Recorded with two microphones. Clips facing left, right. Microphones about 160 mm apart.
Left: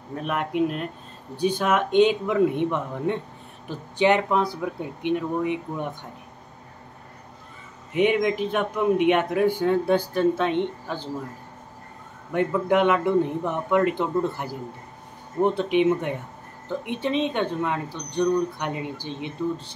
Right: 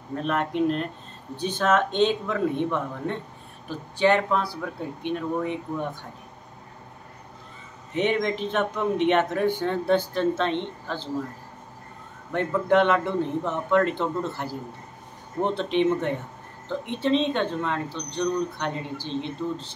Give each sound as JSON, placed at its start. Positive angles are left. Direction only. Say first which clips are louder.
{"t": 0.2, "sound": "speech", "louder": "even", "side_deg": 10}
{"t": 7.9, "sound": "speech", "louder": "left 3 dB", "side_deg": 10}
{"t": 12.3, "sound": "speech", "louder": "left 1 dB", "side_deg": 10}